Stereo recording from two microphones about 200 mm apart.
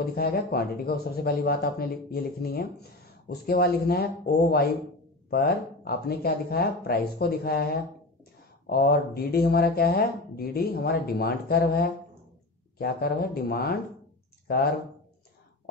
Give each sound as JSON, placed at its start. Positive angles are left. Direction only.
{"t": 0.0, "sound": "speech", "side_deg": 50}